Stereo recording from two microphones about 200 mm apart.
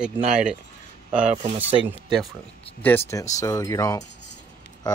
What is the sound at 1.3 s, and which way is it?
Speech, 35° right (ahead or behind).